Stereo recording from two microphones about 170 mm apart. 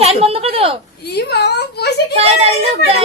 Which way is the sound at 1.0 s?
75° left (ahead or behind).